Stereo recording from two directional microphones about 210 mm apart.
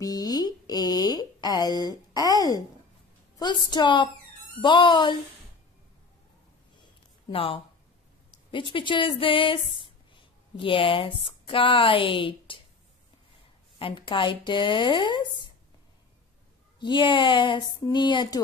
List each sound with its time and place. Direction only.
0.0 s a sound: 20° left (ahead or behind)
3.3 s speech: 20° left (ahead or behind)
6.8 s a sound: 25° left (ahead or behind)
8.5 s speech: 25° left (ahead or behind)
13.7 s speech: 25° left (ahead or behind)
16.8 s speech: 25° left (ahead or behind)